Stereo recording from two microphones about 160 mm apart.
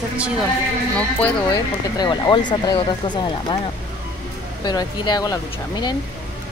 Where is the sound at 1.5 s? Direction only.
30° left (ahead or behind).